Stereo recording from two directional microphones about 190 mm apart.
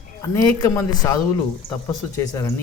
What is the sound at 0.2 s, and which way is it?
Speech, 15° left (ahead or behind).